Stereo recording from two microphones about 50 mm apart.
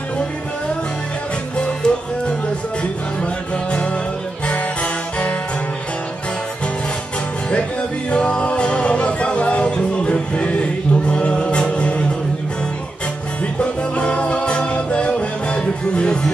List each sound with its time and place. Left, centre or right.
1.6 s music: centre
4.5 s music: left
8.1 s music: left
13.6 s music: left